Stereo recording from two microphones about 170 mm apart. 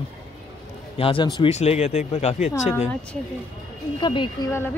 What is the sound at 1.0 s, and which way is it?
Speech, 30° left (ahead or behind).